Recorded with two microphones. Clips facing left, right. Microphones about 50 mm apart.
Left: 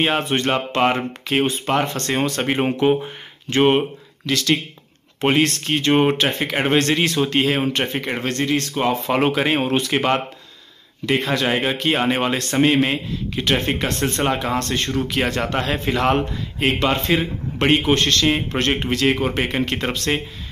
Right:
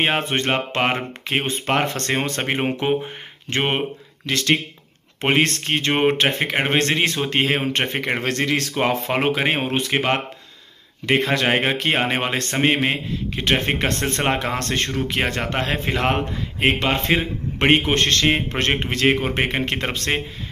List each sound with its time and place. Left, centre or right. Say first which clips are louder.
0.3 s speech: left 1 dB; right
1.7 s speech: even; right
2.5 s speech: left 3 dB; centre
4.3 s speech: even; right
6.1 s speech: right 1 dB; right
7.7 s speech: right 1 dB; right
8.3 s speech: left 2 dB; right
9.0 s speech: left 2 dB; right
11.1 s speech: right 1 dB; right
12.0 s speech: left 2 dB; right
15.0 s speech: left 2 dB; right